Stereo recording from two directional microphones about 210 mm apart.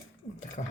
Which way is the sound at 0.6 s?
45° left (ahead or behind).